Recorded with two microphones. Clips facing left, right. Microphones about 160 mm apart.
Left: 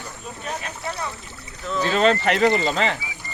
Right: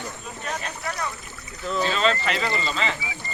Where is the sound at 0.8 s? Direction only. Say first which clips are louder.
Left 1 dB; 25° left (ahead or behind).